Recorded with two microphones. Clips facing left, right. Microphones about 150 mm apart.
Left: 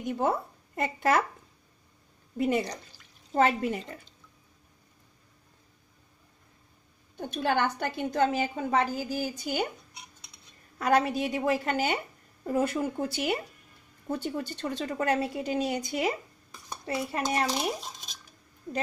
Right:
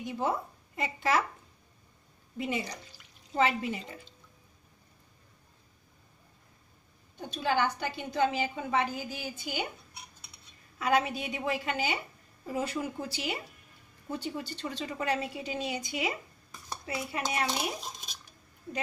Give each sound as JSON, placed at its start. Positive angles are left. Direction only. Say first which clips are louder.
{"t": 0.0, "sound": "speech", "louder": "left 4 dB", "side_deg": 45}
{"t": 2.3, "sound": "a woman's voice", "louder": "left 7 dB", "side_deg": 50}
{"t": 7.2, "sound": "a woman's voice", "louder": "left 2 dB", "side_deg": 55}
{"t": 10.8, "sound": "a woman's voice", "louder": "left 3 dB", "side_deg": 40}